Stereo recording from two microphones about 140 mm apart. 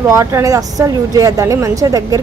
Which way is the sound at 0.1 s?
20° right (ahead or behind).